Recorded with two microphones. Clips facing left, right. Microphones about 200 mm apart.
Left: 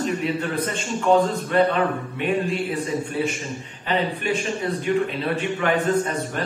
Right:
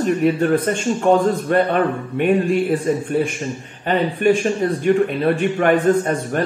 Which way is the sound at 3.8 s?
50° right (ahead or behind).